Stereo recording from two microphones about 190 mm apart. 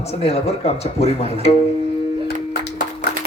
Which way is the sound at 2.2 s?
60° left (ahead or behind).